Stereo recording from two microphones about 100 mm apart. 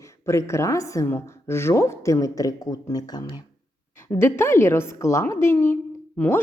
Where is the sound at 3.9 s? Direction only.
25° left (ahead or behind).